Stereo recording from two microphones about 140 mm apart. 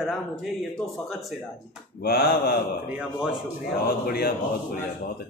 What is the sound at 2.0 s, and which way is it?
Speech, 90° left.